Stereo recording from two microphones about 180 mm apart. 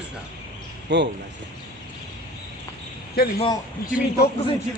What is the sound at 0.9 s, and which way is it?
Speech, 75° right (ahead or behind).